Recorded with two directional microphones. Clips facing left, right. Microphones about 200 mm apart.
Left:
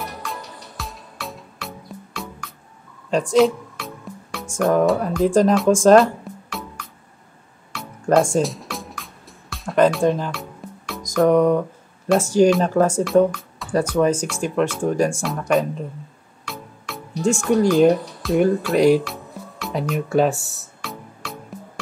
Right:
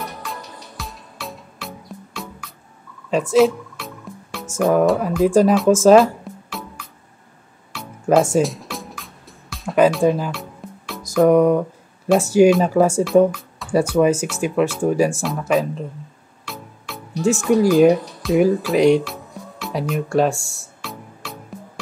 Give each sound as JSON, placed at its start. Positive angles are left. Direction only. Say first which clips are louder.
{"t": 0.2, "sound": "music", "louder": "even", "side_deg": 0}
{"t": 3.1, "sound": "music", "louder": "right 1 dB", "side_deg": -5}
{"t": 4.6, "sound": "speech", "louder": "right 1 dB", "side_deg": -5}
{"t": 6.3, "sound": "music", "louder": "even", "side_deg": 0}
{"t": 7.7, "sound": "music", "louder": "right 1 dB", "side_deg": 0}
{"t": 12.2, "sound": "speech", "louder": "right 2 dB", "side_deg": -10}
{"t": 20.8, "sound": "music", "louder": "even", "side_deg": 0}